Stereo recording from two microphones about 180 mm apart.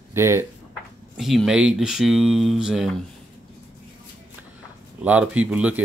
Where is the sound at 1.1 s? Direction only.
Centre (ahead or behind).